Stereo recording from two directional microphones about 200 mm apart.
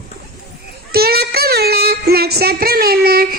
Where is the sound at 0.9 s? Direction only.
50° right (ahead or behind).